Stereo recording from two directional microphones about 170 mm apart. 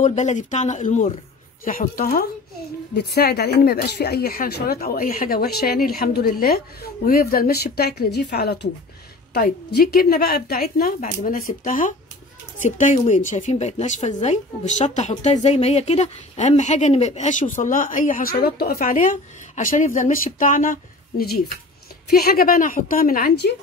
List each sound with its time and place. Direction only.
0.0 s a woman's voice: 45° left (ahead or behind)
1.6 s speech: 55° left (ahead or behind)
2.9 s a woman's voice: 75° left (ahead or behind)